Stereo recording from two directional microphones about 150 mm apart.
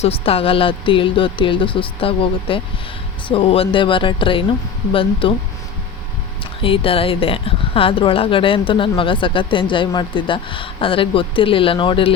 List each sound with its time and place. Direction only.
0.0 s speech: 40° left (ahead or behind)
6.4 s speech: 35° left (ahead or behind)